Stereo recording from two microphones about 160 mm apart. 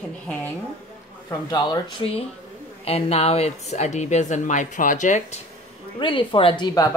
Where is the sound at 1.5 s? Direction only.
25° left (ahead or behind); by 5.4 s 50° left (ahead or behind).